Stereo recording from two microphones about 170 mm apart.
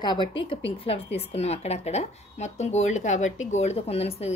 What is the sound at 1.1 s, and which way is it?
Speech, 40° left (ahead or behind).